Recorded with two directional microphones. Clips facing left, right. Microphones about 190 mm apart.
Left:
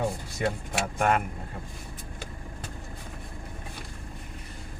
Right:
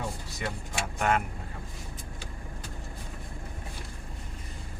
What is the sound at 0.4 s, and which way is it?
Speech, 60° left (ahead or behind).